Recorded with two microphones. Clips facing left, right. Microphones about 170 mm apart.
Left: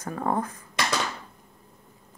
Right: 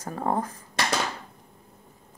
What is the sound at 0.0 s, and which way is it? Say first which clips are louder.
Speech: even; 30° right (ahead or behind).